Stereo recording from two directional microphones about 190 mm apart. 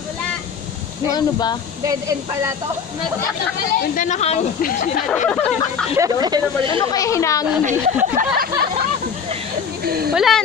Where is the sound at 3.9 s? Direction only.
40° left (ahead or behind).